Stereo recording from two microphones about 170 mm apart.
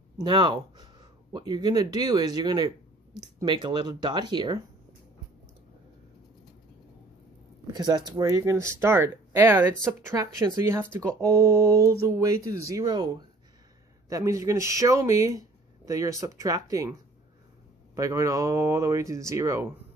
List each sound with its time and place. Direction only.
0.2 s speech: 30° right (ahead or behind)
7.6 s speech: 25° right (ahead or behind)
17.9 s speech: 20° right (ahead or behind)